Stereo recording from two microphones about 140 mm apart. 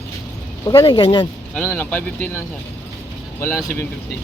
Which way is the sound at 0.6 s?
30° left (ahead or behind).